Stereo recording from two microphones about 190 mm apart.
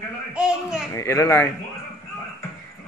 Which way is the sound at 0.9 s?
15° left (ahead or behind).